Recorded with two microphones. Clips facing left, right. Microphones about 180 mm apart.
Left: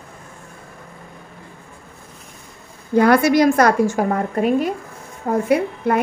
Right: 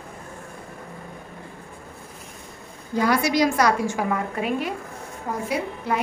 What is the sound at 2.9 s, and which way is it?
A woman's voice, 60° left (ahead or behind).